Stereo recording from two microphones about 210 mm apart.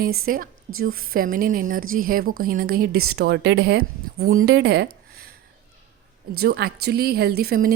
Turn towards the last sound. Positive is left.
turn(degrees=-45)  # may be behind; listen again after turning